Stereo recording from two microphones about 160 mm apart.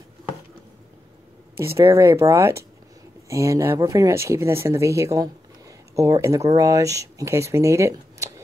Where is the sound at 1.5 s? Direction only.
15° right (ahead or behind).